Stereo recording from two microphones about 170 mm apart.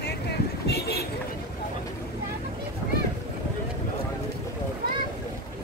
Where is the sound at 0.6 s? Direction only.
75° left (ahead or behind).